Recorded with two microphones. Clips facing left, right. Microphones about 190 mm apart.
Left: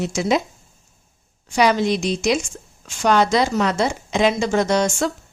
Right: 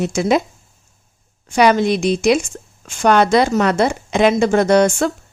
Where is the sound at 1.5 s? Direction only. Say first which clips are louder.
Right 4 dB; 55° right (ahead or behind).